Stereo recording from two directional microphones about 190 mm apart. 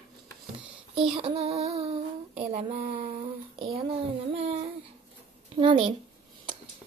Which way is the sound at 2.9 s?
50° right (ahead or behind).